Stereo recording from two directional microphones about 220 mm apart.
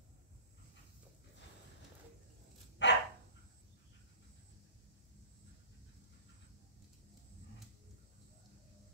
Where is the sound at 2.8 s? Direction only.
55° left (ahead or behind).